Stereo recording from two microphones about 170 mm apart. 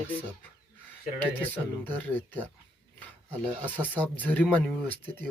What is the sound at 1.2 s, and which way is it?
Speech, 10° left (ahead or behind).